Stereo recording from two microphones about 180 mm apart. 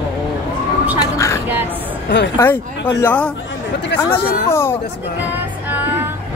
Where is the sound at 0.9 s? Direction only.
15° left (ahead or behind).